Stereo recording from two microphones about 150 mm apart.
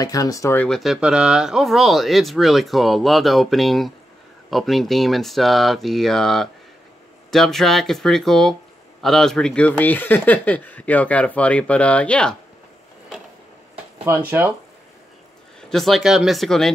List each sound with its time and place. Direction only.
0.0 s speech: 25° left (ahead or behind)
0.6 s speech: 5° left (ahead or behind)
15.7 s speech: centre (ahead or behind)